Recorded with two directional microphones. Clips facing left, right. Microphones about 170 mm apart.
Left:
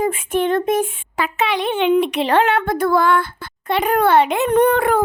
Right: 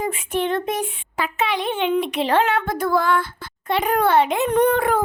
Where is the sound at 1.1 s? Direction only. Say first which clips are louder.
Left 3 dB; 75° left (ahead or behind).